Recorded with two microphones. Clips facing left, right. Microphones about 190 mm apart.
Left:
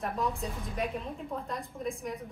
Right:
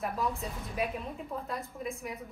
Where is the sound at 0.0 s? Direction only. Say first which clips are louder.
Left 1 dB; centre (ahead or behind).